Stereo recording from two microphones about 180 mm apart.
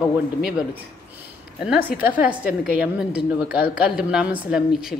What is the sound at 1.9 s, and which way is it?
Speech, 55° left (ahead or behind).